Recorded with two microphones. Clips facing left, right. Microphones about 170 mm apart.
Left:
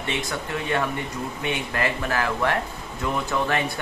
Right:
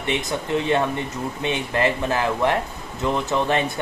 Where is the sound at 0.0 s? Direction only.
20° right (ahead or behind).